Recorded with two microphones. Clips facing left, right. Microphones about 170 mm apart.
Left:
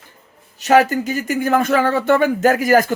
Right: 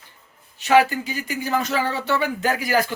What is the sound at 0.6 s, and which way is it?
Speech, 45° left (ahead or behind).